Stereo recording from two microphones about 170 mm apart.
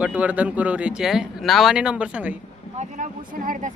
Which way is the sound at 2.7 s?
50° right (ahead or behind).